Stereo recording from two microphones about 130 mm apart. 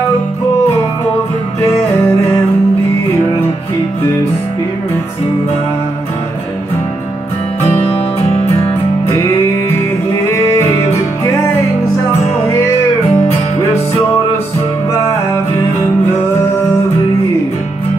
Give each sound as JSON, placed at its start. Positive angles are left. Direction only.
{"t": 7.6, "sound": "music", "side_deg": 55}
{"t": 10.3, "sound": "music", "side_deg": 20}
{"t": 13.1, "sound": "music", "side_deg": 15}
{"t": 14.9, "sound": "music", "side_deg": 20}